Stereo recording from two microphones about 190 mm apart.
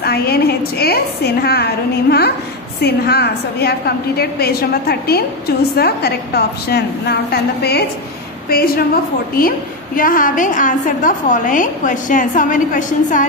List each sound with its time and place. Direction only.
0.0 s a woman's voice: 55° left (ahead or behind)
9.9 s a woman's voice: 45° left (ahead or behind)